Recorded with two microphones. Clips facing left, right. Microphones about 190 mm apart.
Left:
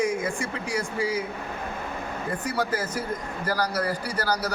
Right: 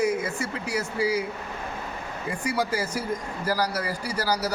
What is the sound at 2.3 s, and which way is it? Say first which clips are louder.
Speech: right 1 dB; 10° right (ahead or behind).